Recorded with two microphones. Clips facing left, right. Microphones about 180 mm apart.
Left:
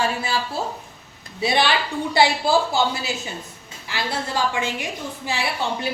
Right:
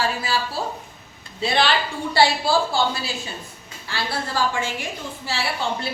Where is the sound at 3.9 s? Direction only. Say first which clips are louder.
Left 1 dB; 20° left (ahead or behind).